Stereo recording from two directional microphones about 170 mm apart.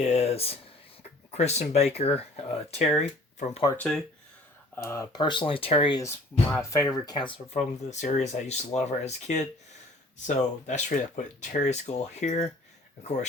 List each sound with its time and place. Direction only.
0.0 s a sound: 40° left (ahead or behind)
1.3 s speech: 40° left (ahead or behind)
3.8 s speech: 5° left (ahead or behind)
4.7 s speech: 15° left (ahead or behind)
6.5 s speech: 15° left (ahead or behind); by 12.5 s 40° left (ahead or behind)